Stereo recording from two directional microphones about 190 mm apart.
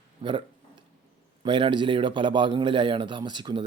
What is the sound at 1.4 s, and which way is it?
A man's voice, 25° right (ahead or behind).